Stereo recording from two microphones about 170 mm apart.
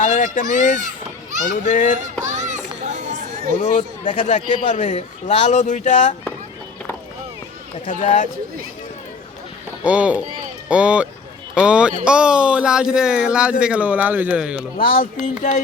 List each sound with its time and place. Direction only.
0.0 s children playing: 50° left (ahead or behind)
1.5 s speech: 45° left (ahead or behind)
2.0 s music: 45° right (ahead or behind)
3.6 s speech: 45° left (ahead or behind)
7.9 s speech: 45° left (ahead or behind)
9.8 s speech: 5° right (ahead or behind)
14.8 s speech: 55° left (ahead or behind)